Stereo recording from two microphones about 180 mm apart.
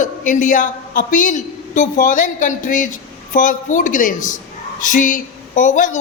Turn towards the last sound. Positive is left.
turn(degrees=45)  # may be behind; listen again after turning